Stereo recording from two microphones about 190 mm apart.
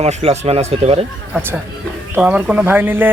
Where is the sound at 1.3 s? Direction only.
10° right (ahead or behind).